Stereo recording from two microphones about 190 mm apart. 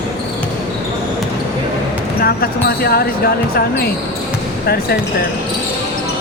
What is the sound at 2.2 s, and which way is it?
Speech, 55° left (ahead or behind).